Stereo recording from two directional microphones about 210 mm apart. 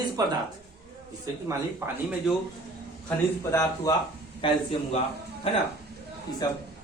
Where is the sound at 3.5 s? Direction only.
15° left (ahead or behind).